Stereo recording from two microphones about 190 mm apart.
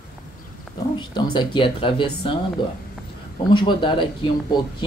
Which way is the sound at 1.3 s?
25° left (ahead or behind).